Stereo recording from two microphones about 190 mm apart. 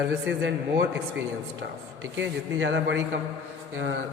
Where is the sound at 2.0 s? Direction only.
70° right (ahead or behind).